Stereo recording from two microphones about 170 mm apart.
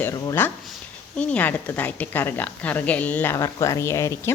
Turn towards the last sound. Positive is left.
turn(degrees=15)  # may be behind; listen again after turning